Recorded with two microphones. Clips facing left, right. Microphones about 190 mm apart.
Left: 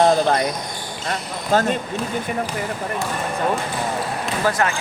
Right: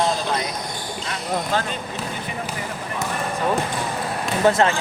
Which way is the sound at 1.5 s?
45° left (ahead or behind).